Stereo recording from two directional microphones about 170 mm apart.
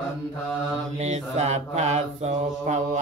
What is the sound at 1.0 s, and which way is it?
Mantra, 40° right (ahead or behind).